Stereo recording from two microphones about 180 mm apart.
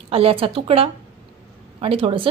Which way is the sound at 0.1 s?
30° right (ahead or behind).